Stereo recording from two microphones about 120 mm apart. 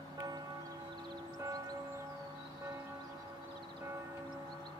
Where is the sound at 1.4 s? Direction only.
30° right (ahead or behind).